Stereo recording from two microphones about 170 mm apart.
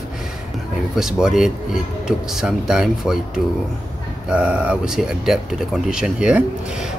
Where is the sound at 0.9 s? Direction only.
Centre (ahead or behind).